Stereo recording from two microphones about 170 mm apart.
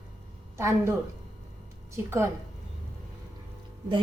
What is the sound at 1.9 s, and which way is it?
Speech, 15° right (ahead or behind).